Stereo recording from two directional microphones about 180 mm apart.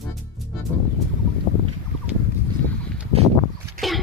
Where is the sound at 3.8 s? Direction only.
50° right (ahead or behind).